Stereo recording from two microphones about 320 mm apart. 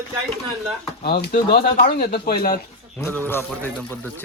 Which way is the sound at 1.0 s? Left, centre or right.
Left.